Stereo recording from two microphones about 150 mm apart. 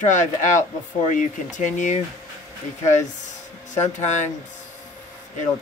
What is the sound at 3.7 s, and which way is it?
Speech, 55° left (ahead or behind).